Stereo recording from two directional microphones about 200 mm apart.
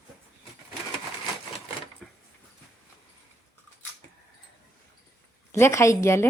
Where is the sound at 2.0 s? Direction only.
Centre (ahead or behind).